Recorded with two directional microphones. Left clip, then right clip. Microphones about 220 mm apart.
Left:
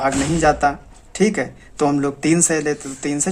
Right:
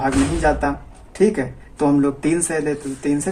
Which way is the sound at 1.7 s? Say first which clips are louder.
Right 1 dB; 45° left (ahead or behind).